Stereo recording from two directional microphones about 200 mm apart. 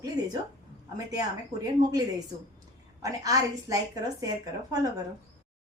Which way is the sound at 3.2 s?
20° right (ahead or behind).